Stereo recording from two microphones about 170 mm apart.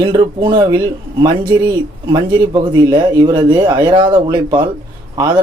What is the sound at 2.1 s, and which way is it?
A man's voice, 25° right (ahead or behind).